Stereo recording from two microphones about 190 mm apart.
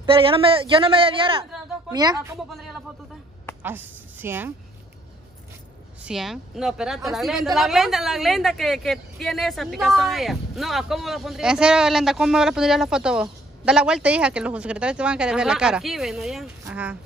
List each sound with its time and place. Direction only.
0.0 s a man's voice: 30° right (ahead or behind)
2.5 s a woman's voice: centre (ahead or behind)
6.0 s a woman's voice: centre (ahead or behind)